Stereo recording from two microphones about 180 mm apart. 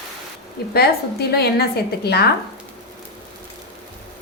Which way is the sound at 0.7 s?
65° left (ahead or behind).